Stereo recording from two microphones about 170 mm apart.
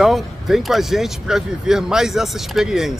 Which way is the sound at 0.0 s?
Centre (ahead or behind).